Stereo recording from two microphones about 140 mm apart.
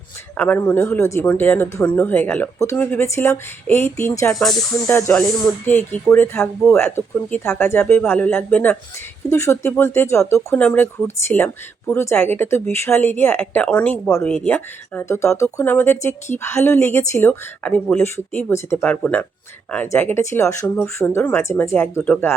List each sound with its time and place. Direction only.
0.3 s speech: 15° left (ahead or behind)
4.4 s speech: centre (ahead or behind)
4.9 s speech: 15° left (ahead or behind)